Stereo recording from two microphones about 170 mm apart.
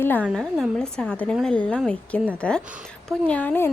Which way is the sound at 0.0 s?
10° left (ahead or behind).